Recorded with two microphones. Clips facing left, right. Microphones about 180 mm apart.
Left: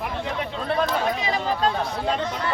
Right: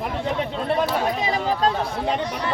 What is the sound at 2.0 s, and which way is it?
Chatter, 15° right (ahead or behind).